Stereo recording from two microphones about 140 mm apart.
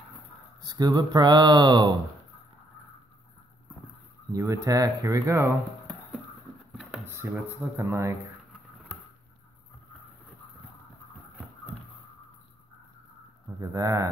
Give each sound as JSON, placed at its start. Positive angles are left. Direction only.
{"t": 0.6, "sound": "speech", "side_deg": -30}
{"t": 4.3, "sound": "speech", "side_deg": -25}
{"t": 7.1, "sound": "speech", "side_deg": -15}
{"t": 13.6, "sound": "speech", "side_deg": -25}